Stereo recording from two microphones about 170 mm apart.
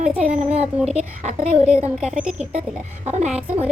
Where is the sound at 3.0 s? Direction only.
40° right (ahead or behind).